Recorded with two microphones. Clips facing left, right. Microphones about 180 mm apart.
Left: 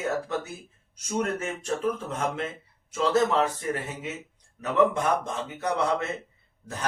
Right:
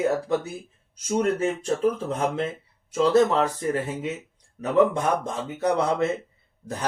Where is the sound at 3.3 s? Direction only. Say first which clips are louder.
Right 2 dB; 35° right (ahead or behind).